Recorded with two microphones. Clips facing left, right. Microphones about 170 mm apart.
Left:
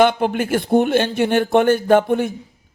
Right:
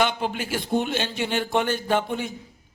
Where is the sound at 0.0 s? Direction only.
55° left (ahead or behind).